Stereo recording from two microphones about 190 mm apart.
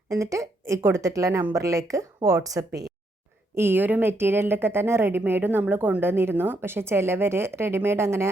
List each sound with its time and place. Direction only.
0.1 s a woman's voice: 15° right (ahead or behind)